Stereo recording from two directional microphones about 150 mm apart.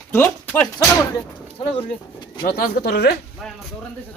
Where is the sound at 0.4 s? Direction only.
20° left (ahead or behind).